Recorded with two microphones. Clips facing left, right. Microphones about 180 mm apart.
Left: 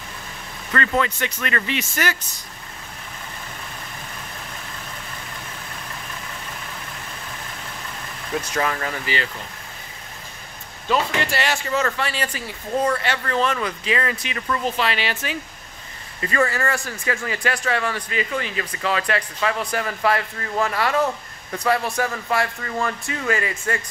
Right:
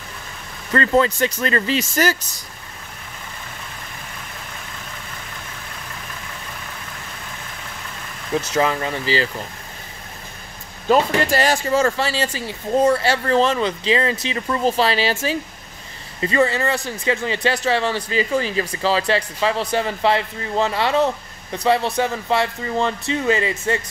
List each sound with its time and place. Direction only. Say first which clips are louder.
0.7 s speech: right 5 dB; 30° right (ahead or behind)
8.4 s speech: right 4 dB; 25° right (ahead or behind)
10.9 s speech: right 5 dB; 40° right (ahead or behind); by 23.8 s 20° right (ahead or behind)